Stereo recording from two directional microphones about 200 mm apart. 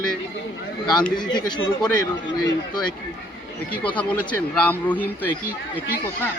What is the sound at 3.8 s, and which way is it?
Speech, 5° left (ahead or behind).